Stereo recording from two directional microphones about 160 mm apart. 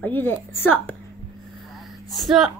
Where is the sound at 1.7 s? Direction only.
Centre (ahead or behind).